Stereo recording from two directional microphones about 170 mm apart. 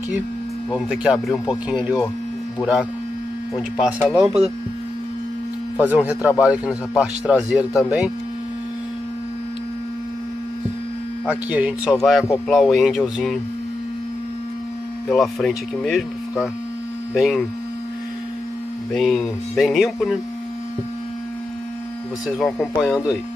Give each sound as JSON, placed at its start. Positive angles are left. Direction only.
{"t": 0.7, "sound": "speech", "side_deg": 0}
{"t": 3.8, "sound": "speech", "side_deg": -15}
{"t": 5.8, "sound": "speech", "side_deg": -10}
{"t": 6.6, "sound": "speech", "side_deg": 20}
{"t": 7.0, "sound": "speech", "side_deg": -5}
{"t": 11.2, "sound": "speech", "side_deg": -10}
{"t": 15.0, "sound": "speech", "side_deg": 0}
{"t": 18.9, "sound": "speech", "side_deg": 5}
{"t": 22.4, "sound": "speech", "side_deg": 0}